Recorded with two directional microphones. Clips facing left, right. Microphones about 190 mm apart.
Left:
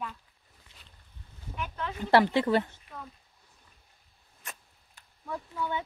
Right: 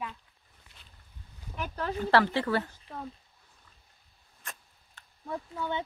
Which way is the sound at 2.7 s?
35° right (ahead or behind).